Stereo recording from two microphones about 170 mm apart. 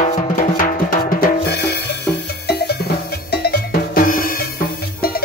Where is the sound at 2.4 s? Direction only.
70° left (ahead or behind).